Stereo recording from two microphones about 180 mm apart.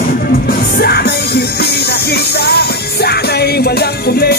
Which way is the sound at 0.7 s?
60° left (ahead or behind).